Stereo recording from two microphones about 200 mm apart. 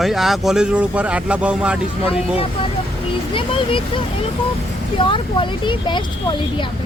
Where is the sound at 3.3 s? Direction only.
25° left (ahead or behind).